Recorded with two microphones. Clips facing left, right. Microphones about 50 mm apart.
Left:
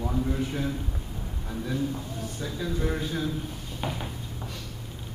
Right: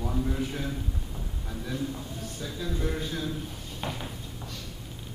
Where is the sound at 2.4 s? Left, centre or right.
Centre.